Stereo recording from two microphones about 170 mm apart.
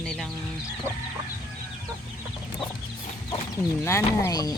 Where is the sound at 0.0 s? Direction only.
5° left (ahead or behind).